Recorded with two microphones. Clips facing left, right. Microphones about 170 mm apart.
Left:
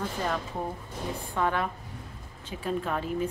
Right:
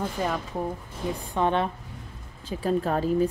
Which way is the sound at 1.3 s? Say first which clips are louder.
Right 4 dB; 25° right (ahead or behind).